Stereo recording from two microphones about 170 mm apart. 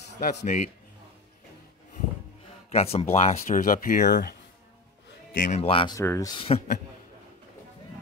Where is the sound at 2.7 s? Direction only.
35° left (ahead or behind); by 4.4 s 60° left (ahead or behind).